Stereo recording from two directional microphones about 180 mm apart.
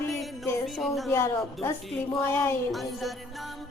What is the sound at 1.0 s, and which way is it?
Speech, 15° left (ahead or behind).